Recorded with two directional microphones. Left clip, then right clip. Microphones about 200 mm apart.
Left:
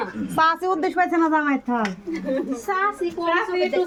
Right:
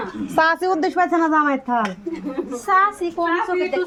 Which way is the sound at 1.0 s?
25° right (ahead or behind).